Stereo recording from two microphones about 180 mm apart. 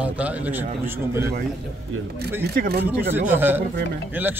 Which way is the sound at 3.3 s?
10° right (ahead or behind).